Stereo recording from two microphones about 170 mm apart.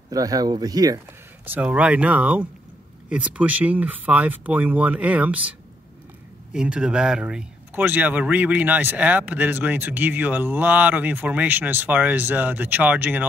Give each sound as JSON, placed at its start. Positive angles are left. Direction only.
{"t": 0.1, "sound": "speech", "side_deg": -20}
{"t": 1.4, "sound": "speech", "side_deg": -10}